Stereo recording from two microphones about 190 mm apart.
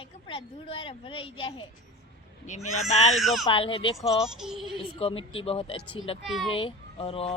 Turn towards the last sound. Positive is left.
turn(degrees=30)  # may be behind; listen again after turning